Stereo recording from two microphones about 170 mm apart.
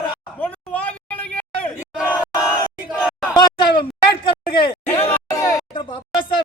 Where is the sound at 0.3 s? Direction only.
10° left (ahead or behind).